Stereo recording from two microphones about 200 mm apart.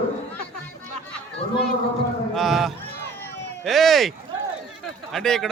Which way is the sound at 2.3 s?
Centre (ahead or behind).